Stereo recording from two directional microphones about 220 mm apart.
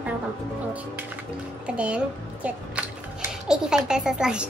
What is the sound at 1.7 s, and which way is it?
A child's voice, 5° right (ahead or behind).